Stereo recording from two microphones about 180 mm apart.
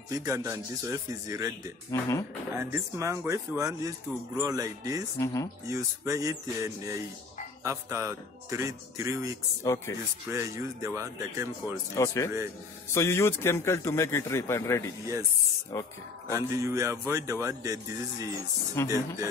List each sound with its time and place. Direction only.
0.1 s speech: 15° right (ahead or behind)
1.9 s a man's voice: 15° left (ahead or behind)
2.5 s speech: 15° right (ahead or behind)
5.2 s a man's voice: 20° left (ahead or behind)
5.7 s speech: 15° right (ahead or behind)
9.6 s a man's voice: 15° left (ahead or behind)
10.3 s speech: 15° right (ahead or behind)
11.9 s a man's voice: 15° left (ahead or behind)
16.3 s speech: 15° right (ahead or behind)
18.8 s a man's voice: 15° left (ahead or behind)